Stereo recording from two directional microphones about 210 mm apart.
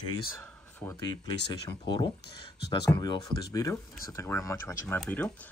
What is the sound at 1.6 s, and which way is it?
Speech, 20° left (ahead or behind).